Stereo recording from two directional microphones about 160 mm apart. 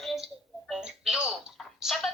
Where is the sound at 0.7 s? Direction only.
5° right (ahead or behind).